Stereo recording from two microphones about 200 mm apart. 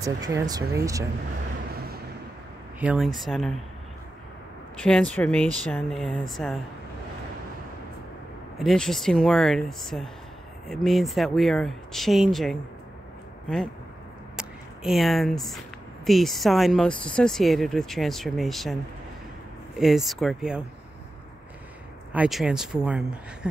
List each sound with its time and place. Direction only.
0.0 s speech: 15° right (ahead or behind)
2.8 s speech: 5° right (ahead or behind)
4.7 s speech: 5° left (ahead or behind)
8.5 s speech: centre (ahead or behind)
14.3 s a sound: centre (ahead or behind)
16.1 s speech: centre (ahead or behind)
19.8 s speech: centre (ahead or behind)
22.1 s speech: 5° right (ahead or behind)